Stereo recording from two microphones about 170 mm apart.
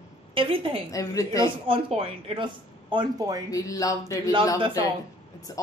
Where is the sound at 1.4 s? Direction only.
30° right (ahead or behind).